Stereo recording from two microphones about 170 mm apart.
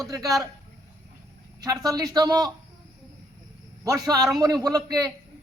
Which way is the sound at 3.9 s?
20° right (ahead or behind).